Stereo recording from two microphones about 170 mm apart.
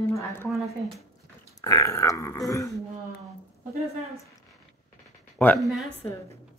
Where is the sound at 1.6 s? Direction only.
20° left (ahead or behind).